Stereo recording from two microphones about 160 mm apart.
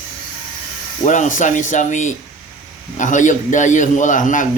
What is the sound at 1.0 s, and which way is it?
A man's voice, 50° left (ahead or behind).